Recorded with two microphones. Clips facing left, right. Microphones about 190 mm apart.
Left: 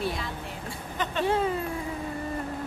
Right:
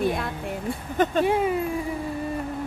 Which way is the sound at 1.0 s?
45° right (ahead or behind).